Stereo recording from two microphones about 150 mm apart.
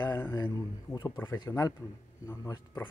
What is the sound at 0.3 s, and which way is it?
A man's voice, 25° left (ahead or behind).